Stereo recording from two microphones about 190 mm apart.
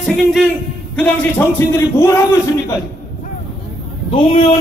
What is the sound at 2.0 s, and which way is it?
Speech, 15° left (ahead or behind).